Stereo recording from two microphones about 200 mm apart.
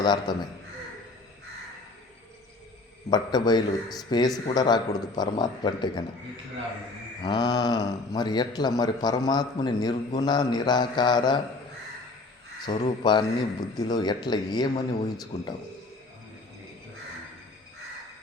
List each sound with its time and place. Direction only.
0.0 s speech: 20° left (ahead or behind)
3.1 s speech: 20° left (ahead or behind)
7.2 s speech: 20° left (ahead or behind)
12.6 s speech: 25° left (ahead or behind)